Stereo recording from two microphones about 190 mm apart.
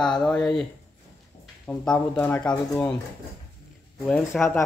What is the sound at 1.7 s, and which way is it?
Speech, 10° left (ahead or behind).